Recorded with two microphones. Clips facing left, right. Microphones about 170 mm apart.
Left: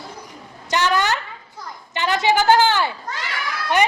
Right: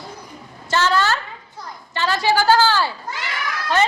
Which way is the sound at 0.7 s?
15° left (ahead or behind).